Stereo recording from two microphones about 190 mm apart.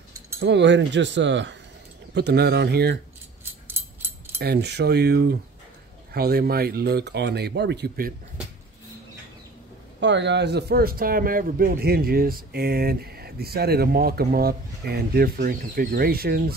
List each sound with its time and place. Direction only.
0.4 s speech: 70° right (ahead or behind)
2.1 s speech: 60° right (ahead or behind)
4.4 s speech: 60° right (ahead or behind)
9.9 s a man's voice: 70° right (ahead or behind); by 16.5 s 55° right (ahead or behind)